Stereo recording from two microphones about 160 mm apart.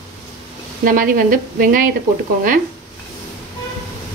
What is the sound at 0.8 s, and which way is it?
A woman's voice, 60° right (ahead or behind).